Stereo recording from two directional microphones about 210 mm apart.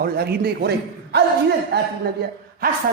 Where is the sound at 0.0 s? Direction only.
50° right (ahead or behind).